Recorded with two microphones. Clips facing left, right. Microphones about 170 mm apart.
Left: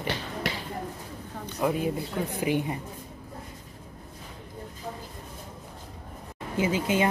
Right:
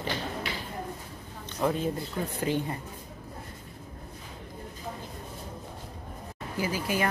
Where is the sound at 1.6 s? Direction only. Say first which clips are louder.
Left 1 dB; 10° left (ahead or behind).